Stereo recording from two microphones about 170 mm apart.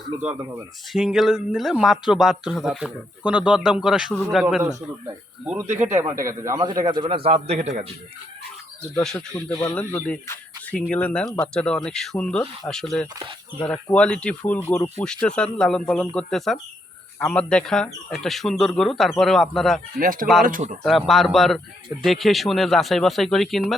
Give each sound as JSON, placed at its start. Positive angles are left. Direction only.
{"t": 0.2, "sound": "a man's voice", "side_deg": -5}
{"t": 4.6, "sound": "a man's voice", "side_deg": -15}
{"t": 9.1, "sound": "speech", "side_deg": 5}
{"t": 20.0, "sound": "speech", "side_deg": -55}
{"t": 20.8, "sound": "speech", "side_deg": 0}